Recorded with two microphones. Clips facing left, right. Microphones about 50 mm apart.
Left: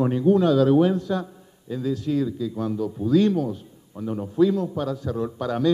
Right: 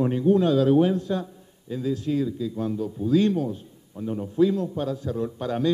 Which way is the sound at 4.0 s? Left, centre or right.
Centre.